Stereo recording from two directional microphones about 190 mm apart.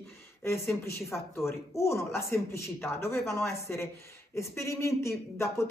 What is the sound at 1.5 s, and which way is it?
Speech, 15° left (ahead or behind).